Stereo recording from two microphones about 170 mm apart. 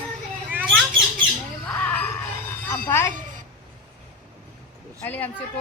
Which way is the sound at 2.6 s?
15° left (ahead or behind).